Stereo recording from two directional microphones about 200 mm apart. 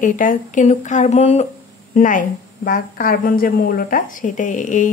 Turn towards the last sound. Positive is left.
turn(degrees=40)  # may be behind; listen again after turning